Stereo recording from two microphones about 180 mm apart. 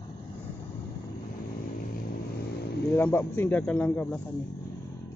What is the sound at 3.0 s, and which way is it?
Speech, 10° left (ahead or behind).